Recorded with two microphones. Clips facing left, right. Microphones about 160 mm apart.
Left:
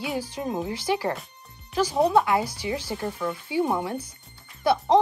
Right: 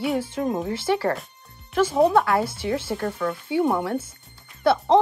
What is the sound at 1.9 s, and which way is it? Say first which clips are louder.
A woman's voice: right 2 dB; centre (ahead or behind).